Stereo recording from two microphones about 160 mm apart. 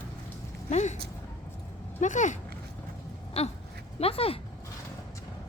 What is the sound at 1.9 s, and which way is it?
Speech, 50° left (ahead or behind).